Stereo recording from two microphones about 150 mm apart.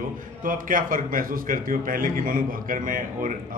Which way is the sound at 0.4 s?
65° right (ahead or behind).